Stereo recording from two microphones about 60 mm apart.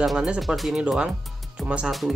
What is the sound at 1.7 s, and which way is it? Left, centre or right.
Speech, centre.